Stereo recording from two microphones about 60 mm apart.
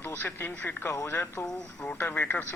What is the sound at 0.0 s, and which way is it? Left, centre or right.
Speech, left.